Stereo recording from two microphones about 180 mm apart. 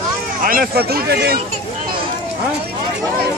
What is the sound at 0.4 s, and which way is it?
Speech, 55° right (ahead or behind).